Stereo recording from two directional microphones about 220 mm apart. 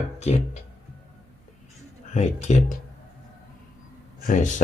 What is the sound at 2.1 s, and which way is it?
Speech, 30° left (ahead or behind).